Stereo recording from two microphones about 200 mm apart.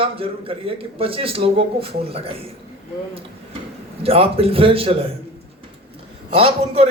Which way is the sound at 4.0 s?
30° right (ahead or behind).